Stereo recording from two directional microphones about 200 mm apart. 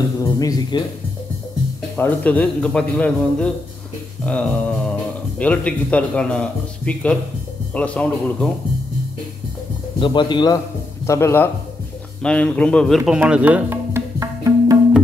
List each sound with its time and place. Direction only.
0.2 s speech: 20° left (ahead or behind)
2.0 s speech: 5° left (ahead or behind)
9.9 s speech: 25° left (ahead or behind)
12.2 s music: 5° left (ahead or behind); by 14.8 s 15° right (ahead or behind)